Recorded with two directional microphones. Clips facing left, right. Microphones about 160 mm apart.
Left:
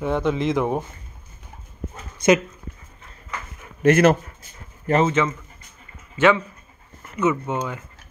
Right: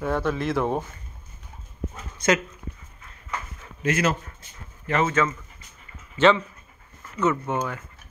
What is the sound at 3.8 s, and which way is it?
Speech, 55° left (ahead or behind).